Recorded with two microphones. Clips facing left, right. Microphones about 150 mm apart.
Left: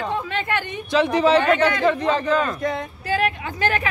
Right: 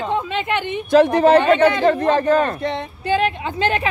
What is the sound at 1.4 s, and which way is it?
Speech, 25° right (ahead or behind).